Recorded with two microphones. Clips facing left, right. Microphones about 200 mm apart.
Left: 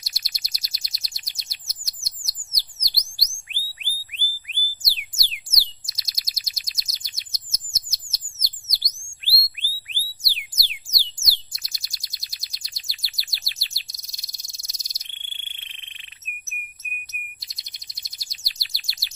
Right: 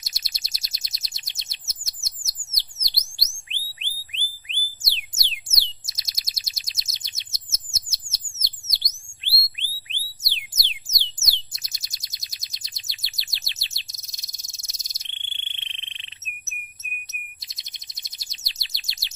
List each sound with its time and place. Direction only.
0.0 s chirp: 25° right (ahead or behind)
2.5 s a sound: 25° right (ahead or behind)
5.1 s bird: 25° right (ahead or behind)
10.5 s music: 25° right (ahead or behind)
11.5 s bird: 20° right (ahead or behind)
17.1 s chirp: 25° right (ahead or behind)